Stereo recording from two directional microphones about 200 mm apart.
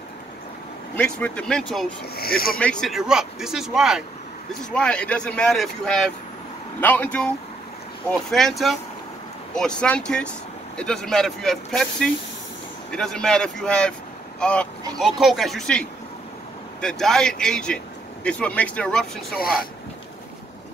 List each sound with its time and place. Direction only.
0.9 s speech: 5° left (ahead or behind)
2.1 s speech: 50° left (ahead or behind)
2.6 s speech: 5° left (ahead or behind)